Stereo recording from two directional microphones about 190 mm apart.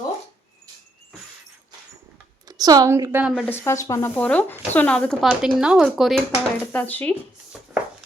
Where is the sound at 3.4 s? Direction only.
15° left (ahead or behind).